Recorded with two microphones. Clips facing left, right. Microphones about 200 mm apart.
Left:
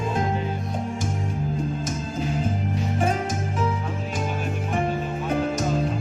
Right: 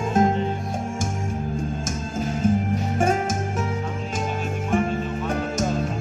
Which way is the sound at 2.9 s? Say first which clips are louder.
Right 3 dB; 45° right (ahead or behind).